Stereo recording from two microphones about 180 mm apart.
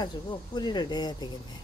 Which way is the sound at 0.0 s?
25° left (ahead or behind).